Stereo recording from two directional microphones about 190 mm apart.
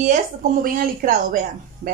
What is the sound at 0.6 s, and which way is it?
Speech, 45° right (ahead or behind).